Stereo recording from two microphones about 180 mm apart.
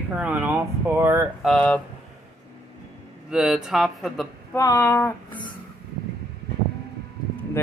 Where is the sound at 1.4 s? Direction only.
5° left (ahead or behind).